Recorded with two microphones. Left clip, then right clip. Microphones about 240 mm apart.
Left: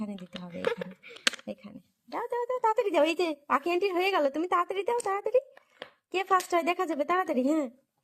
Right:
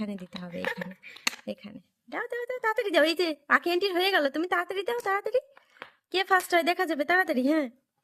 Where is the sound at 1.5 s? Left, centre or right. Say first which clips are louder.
Right 3 dB; right.